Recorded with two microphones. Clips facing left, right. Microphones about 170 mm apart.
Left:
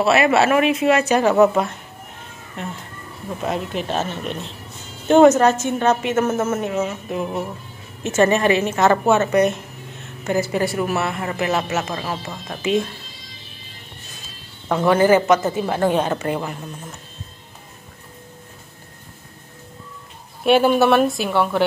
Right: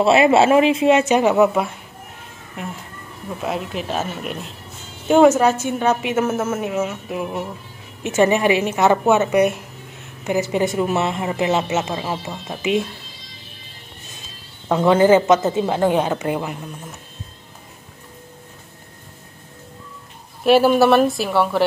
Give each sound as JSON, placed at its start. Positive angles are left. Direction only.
{"t": 0.0, "sound": "speech", "side_deg": -25}
{"t": 1.3, "sound": "a woman's voice", "side_deg": -5}
{"t": 14.7, "sound": "speech", "side_deg": -20}
{"t": 20.4, "sound": "speech", "side_deg": 0}